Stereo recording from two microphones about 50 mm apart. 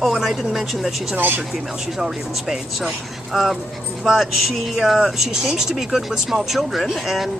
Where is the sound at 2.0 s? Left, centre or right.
Centre.